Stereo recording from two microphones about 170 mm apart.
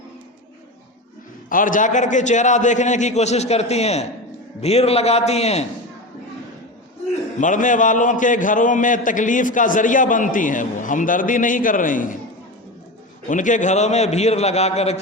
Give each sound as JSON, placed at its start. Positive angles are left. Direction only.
{"t": 1.5, "sound": "a man's voice", "side_deg": 55}
{"t": 7.3, "sound": "a man's voice", "side_deg": 50}
{"t": 13.2, "sound": "a man's voice", "side_deg": 50}